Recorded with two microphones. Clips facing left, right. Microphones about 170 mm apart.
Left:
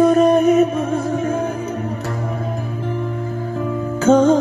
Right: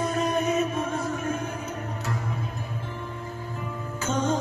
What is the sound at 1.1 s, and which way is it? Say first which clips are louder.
Music: left 9 dB; 60° left (ahead or behind).